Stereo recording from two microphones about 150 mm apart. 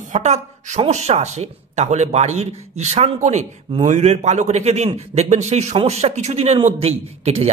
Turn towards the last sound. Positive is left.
turn(degrees=-45)  # may be behind; listen again after turning